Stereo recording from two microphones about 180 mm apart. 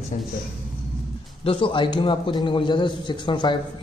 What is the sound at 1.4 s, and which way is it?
A man's voice, 30° left (ahead or behind).